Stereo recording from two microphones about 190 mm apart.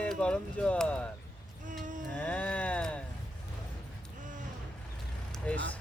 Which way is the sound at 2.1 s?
10° left (ahead or behind).